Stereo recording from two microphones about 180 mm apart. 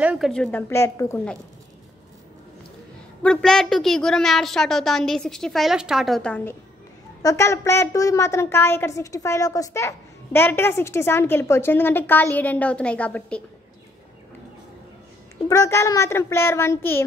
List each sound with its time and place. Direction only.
0.0 s a woman's voice: 5° right (ahead or behind)
0.3 s a woman's voice: 5° left (ahead or behind)
3.2 s a woman's voice: 5° left (ahead or behind)
15.4 s a woman's voice: 15° left (ahead or behind)